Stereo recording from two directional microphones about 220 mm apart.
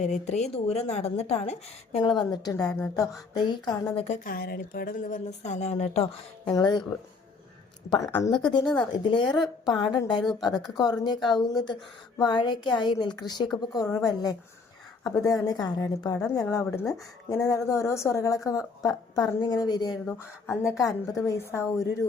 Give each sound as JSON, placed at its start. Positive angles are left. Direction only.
{"t": 0.0, "sound": "a woman's voice", "side_deg": 30}
{"t": 6.5, "sound": "a woman's voice", "side_deg": 20}
{"t": 7.9, "sound": "a woman's voice", "side_deg": 15}